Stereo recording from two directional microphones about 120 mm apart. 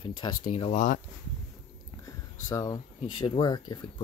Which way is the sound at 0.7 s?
90° left.